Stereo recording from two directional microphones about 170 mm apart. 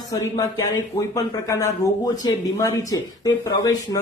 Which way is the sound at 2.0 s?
20° left (ahead or behind).